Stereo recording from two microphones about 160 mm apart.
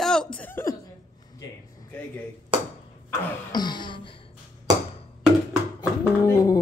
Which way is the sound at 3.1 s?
25° left (ahead or behind).